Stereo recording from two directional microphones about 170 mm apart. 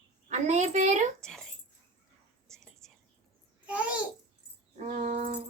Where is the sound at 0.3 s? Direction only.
45° right (ahead or behind).